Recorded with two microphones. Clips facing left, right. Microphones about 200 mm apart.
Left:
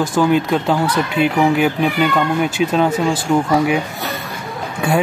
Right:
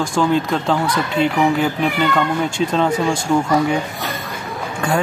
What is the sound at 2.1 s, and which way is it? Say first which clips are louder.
Speech: left 2 dB; 5° left (ahead or behind).